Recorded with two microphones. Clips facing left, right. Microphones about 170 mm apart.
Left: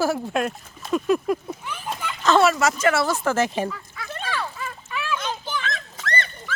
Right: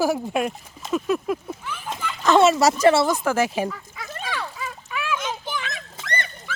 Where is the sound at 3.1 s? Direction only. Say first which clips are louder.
Right 1 dB; 10° right (ahead or behind).